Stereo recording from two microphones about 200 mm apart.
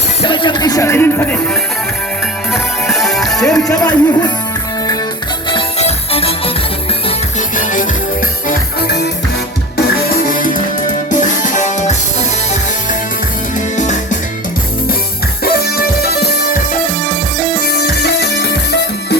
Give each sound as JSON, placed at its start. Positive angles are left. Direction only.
{"t": 0.3, "sound": "speech", "side_deg": 20}
{"t": 2.5, "sound": "music", "side_deg": 0}
{"t": 3.7, "sound": "speech", "side_deg": 20}
{"t": 5.5, "sound": "music", "side_deg": 25}
{"t": 7.3, "sound": "music", "side_deg": 40}
{"t": 8.4, "sound": "music", "side_deg": 55}
{"t": 10.3, "sound": "music", "side_deg": 40}
{"t": 13.7, "sound": "music", "side_deg": 35}
{"t": 15.4, "sound": "music", "side_deg": 50}
{"t": 17.7, "sound": "music", "side_deg": 55}